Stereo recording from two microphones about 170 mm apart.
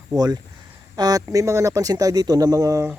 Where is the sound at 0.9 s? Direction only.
20° right (ahead or behind).